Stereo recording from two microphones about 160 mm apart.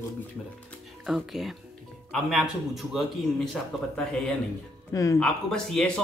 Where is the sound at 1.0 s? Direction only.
Centre (ahead or behind).